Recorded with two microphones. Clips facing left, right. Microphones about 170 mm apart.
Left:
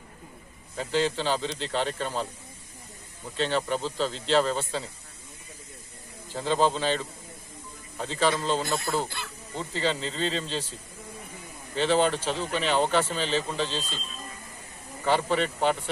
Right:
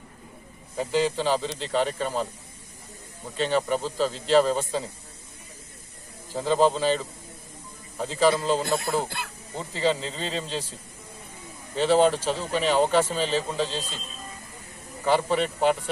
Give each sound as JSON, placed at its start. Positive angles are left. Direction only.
{"t": 0.7, "sound": "a man's voice", "side_deg": -10}
{"t": 3.3, "sound": "a man's voice", "side_deg": -10}
{"t": 6.3, "sound": "a man's voice", "side_deg": -5}
{"t": 8.6, "sound": "speech", "side_deg": -55}
{"t": 9.6, "sound": "a man's voice", "side_deg": -10}
{"t": 11.7, "sound": "a man's voice", "side_deg": -5}
{"t": 15.0, "sound": "a man's voice", "side_deg": -10}